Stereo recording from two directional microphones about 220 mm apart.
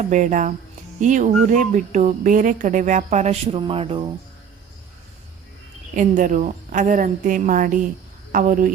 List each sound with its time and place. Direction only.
0.0 s speech: 35° right (ahead or behind)
5.9 s speech: 35° right (ahead or behind)